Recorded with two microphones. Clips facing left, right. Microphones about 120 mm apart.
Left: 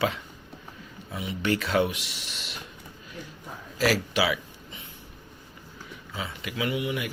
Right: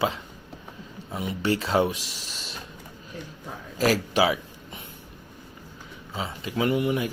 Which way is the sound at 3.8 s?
40° right (ahead or behind).